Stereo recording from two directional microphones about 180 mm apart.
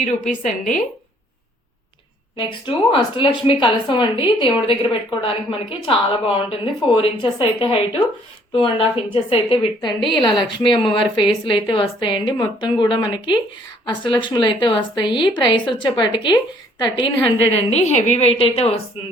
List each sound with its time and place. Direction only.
0.0 s a woman's voice: 45° left (ahead or behind)
2.3 s a woman's voice: 30° left (ahead or behind)